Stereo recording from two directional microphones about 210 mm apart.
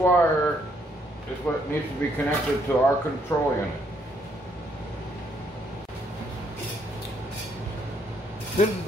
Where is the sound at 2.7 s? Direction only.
10° left (ahead or behind).